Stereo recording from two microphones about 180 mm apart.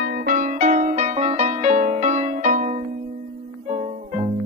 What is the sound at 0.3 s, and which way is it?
Music, 45° right (ahead or behind).